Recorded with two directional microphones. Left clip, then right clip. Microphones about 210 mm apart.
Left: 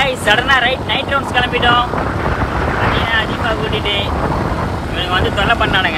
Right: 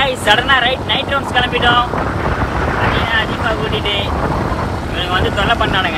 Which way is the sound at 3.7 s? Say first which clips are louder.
Even; 25° left (ahead or behind).